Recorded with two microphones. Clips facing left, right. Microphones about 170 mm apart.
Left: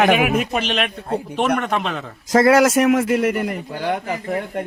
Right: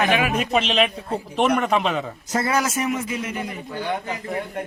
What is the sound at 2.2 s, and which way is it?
A man's voice, 90° left.